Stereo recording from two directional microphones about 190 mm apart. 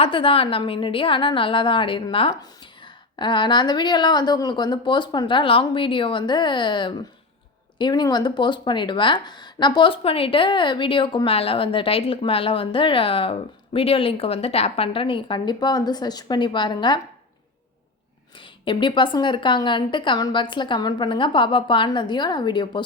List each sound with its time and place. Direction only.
0.0 s a woman's voice: 30° left (ahead or behind)
18.6 s a woman's voice: 25° left (ahead or behind)